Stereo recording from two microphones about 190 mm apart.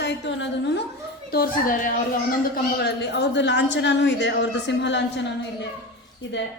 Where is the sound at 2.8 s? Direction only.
65° left (ahead or behind).